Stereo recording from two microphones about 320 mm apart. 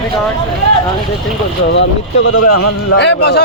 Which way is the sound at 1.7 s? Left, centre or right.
Left.